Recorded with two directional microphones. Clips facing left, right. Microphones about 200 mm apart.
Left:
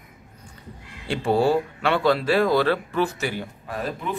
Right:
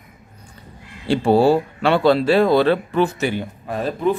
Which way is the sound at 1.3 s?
30° right (ahead or behind).